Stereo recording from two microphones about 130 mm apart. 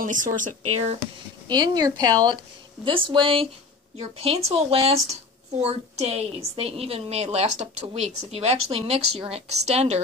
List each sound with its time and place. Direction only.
0.0 s speech: 90° right
1.5 s a woman's voice: 35° right (ahead or behind)
2.8 s a woman's voice: 40° right (ahead or behind)
3.9 s a woman's voice: 50° right (ahead or behind)